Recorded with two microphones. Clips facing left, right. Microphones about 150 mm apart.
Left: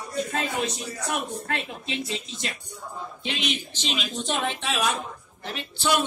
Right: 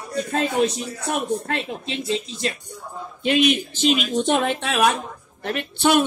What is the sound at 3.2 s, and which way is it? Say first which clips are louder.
Speech: right 13 dB; 50° right (ahead or behind).